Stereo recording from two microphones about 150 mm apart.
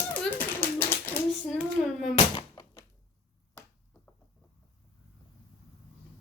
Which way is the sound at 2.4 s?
35° left (ahead or behind).